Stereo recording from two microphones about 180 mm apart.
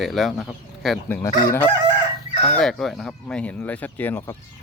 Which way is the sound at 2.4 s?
5° left (ahead or behind).